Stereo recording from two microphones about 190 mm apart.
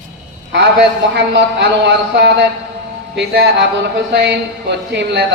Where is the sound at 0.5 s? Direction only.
65° right (ahead or behind).